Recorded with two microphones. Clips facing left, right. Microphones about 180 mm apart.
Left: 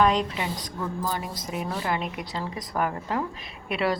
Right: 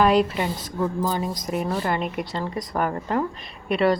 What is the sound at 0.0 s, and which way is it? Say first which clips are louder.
Speech: right 4 dB; 5° right (ahead or behind).